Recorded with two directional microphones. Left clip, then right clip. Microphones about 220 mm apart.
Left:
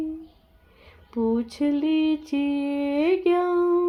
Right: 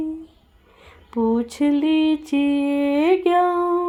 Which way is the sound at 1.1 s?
30° right (ahead or behind).